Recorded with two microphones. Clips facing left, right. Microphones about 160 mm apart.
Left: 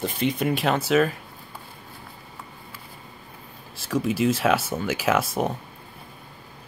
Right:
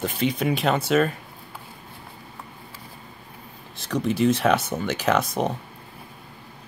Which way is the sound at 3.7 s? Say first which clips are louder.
Even; 5° left (ahead or behind).